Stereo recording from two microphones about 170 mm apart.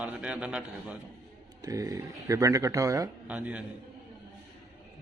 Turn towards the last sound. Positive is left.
turn(degrees=-10)  # may be behind; listen again after turning